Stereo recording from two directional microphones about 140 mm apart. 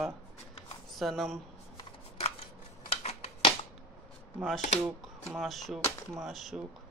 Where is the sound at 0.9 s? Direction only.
Centre (ahead or behind).